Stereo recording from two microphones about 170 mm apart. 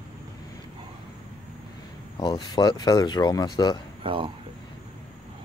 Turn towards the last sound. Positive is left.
turn(degrees=-30)  # may be behind; listen again after turning